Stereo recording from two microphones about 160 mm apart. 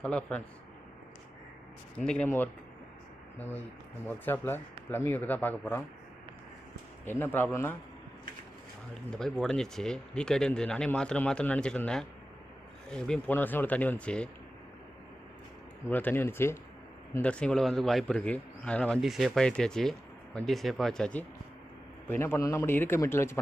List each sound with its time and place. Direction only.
0.0 s speech: 5° left (ahead or behind)
2.0 s speech: 10° left (ahead or behind)
7.0 s speech: 15° left (ahead or behind)
9.0 s a man's voice: 5° left (ahead or behind)
15.9 s a man's voice: 10° left (ahead or behind)